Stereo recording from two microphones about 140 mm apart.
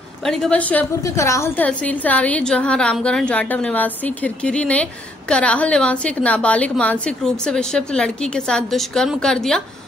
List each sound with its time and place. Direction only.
0.2 s a woman's voice: 5° left (ahead or behind)
1.0 s a woman's voice: 20° left (ahead or behind)
1.7 s a woman's voice: 10° left (ahead or behind)